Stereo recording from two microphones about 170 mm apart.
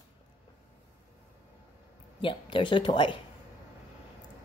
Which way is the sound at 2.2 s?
30° left (ahead or behind).